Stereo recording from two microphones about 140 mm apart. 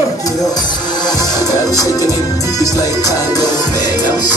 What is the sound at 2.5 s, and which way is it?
Music, 25° left (ahead or behind).